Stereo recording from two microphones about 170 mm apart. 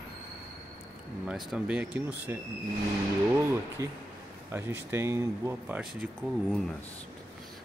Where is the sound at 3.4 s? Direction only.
15° right (ahead or behind).